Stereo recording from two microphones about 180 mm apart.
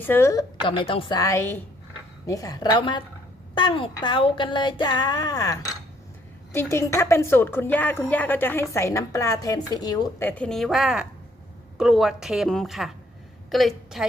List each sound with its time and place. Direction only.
0.0 s a woman's voice: 15° left (ahead or behind)